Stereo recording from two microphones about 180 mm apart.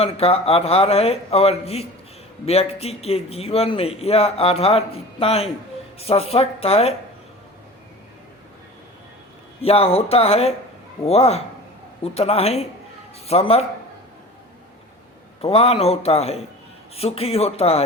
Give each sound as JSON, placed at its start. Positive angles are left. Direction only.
{"t": 0.0, "sound": "a man's voice", "side_deg": 35}
{"t": 9.6, "sound": "a man's voice", "side_deg": 35}
{"t": 15.4, "sound": "a man's voice", "side_deg": 35}